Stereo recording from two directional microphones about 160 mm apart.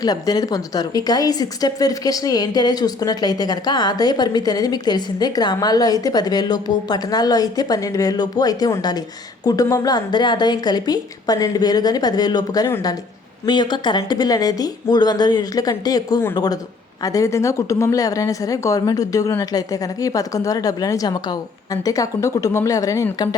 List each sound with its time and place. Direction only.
0.0 s a woman's voice: 25° left (ahead or behind)